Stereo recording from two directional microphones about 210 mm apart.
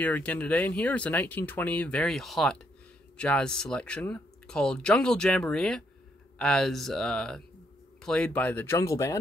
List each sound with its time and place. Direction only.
0.0 s speech: 5° left (ahead or behind)